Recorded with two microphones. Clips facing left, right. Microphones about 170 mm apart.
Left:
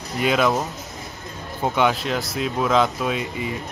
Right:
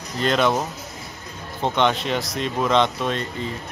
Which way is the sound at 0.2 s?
5° left (ahead or behind).